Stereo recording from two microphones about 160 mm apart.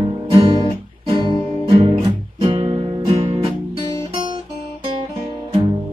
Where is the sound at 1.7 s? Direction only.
35° right (ahead or behind).